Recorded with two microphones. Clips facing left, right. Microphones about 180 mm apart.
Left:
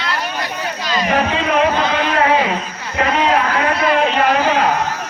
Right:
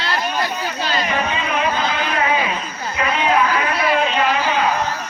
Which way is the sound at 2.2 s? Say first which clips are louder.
Left 4 dB; 65° left (ahead or behind).